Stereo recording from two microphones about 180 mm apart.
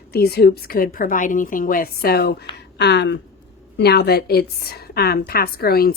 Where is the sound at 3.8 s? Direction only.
65° left (ahead or behind).